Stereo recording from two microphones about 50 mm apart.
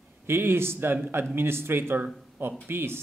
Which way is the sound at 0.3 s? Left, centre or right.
Right.